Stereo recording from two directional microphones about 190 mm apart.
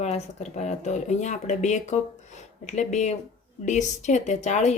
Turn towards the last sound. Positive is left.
turn(degrees=35)  # may be behind; listen again after turning